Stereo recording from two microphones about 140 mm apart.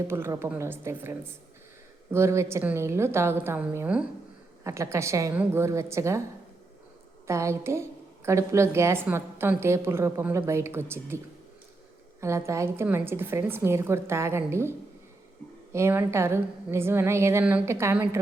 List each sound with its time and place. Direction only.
0.1 s a woman's voice: 20° right (ahead or behind)
4.6 s a woman's voice: 20° right (ahead or behind)
7.3 s a woman's voice: 20° right (ahead or behind)
12.2 s a woman's voice: 20° right (ahead or behind)